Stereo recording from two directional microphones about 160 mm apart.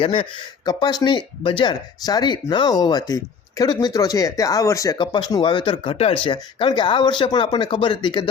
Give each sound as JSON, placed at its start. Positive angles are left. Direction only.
{"t": 0.0, "sound": "speech", "side_deg": 35}